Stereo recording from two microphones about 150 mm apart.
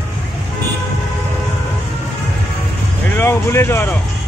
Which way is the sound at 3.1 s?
15° left (ahead or behind).